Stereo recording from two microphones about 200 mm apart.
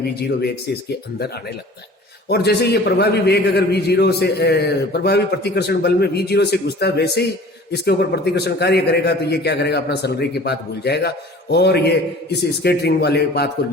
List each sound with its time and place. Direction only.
0.0 s speech: 50° left (ahead or behind)
2.3 s a man's voice: 55° left (ahead or behind)